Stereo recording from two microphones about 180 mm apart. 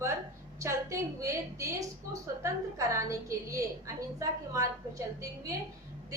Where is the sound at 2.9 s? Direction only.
15° right (ahead or behind).